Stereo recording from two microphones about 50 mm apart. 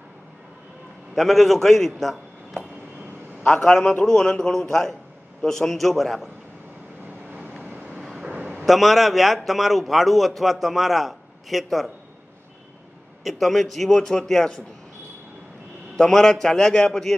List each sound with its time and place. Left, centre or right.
1.1 s a man's voice: centre
7.5 s vehicle: right
8.4 s a sound: right
8.6 s a man's voice: centre
13.2 s a man's voice: centre
16.0 s a man's voice: centre